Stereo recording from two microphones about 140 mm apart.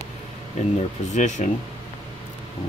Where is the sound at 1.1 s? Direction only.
60° left (ahead or behind).